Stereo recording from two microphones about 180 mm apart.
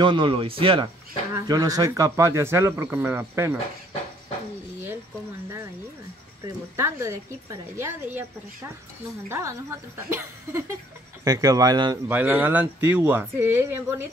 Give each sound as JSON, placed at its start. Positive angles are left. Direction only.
{"t": 0.0, "sound": "speech", "side_deg": -25}
{"t": 6.4, "sound": "speech", "side_deg": -15}
{"t": 12.1, "sound": "speech", "side_deg": -10}